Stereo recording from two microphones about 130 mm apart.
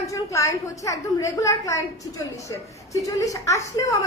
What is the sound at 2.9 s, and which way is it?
A woman's voice, 25° left (ahead or behind).